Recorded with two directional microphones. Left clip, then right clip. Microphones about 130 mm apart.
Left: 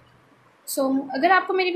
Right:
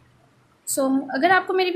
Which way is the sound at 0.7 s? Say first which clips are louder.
Right 1 dB; 30° right (ahead or behind).